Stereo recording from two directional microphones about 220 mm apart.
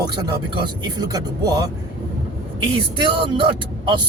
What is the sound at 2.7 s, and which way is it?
Speech, 20° right (ahead or behind).